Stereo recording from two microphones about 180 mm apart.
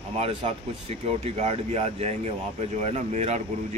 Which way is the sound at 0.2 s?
30° right (ahead or behind).